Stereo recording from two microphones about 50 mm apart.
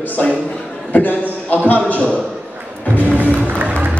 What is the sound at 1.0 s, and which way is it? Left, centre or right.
Speech, left.